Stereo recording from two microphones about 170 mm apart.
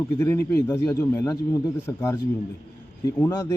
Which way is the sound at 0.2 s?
15° left (ahead or behind).